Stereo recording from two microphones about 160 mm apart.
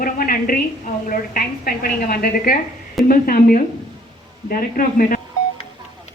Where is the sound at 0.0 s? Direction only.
65° left (ahead or behind).